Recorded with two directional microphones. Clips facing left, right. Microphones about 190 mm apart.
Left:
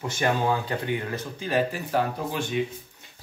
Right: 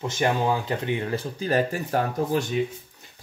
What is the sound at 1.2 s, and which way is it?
Speech, 40° right (ahead or behind).